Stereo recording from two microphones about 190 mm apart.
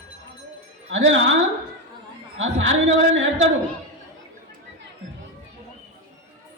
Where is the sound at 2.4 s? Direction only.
85° right.